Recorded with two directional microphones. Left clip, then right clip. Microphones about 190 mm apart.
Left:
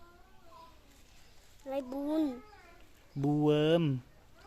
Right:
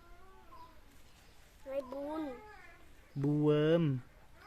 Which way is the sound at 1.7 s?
60° left (ahead or behind).